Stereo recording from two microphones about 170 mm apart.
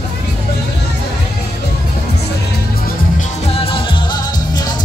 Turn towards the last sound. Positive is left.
turn(degrees=25)  # may be behind; listen again after turning